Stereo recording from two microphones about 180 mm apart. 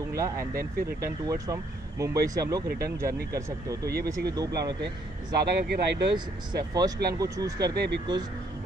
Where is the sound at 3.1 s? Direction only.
60° right (ahead or behind).